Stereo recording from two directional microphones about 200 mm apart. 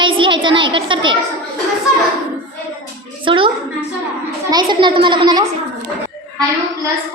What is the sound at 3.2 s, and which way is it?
A woman's voice, 25° right (ahead or behind).